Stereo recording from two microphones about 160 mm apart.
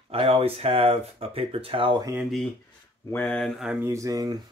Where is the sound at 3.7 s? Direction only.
15° right (ahead or behind).